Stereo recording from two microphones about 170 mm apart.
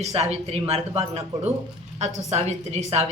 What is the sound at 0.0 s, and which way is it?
A woman's voice, 40° right (ahead or behind).